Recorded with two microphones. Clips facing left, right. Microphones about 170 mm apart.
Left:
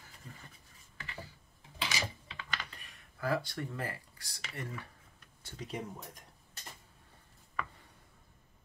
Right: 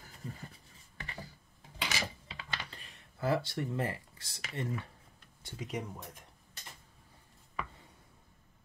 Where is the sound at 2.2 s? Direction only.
30° right (ahead or behind).